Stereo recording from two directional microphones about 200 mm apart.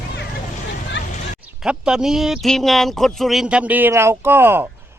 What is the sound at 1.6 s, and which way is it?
Speech, 5° right (ahead or behind).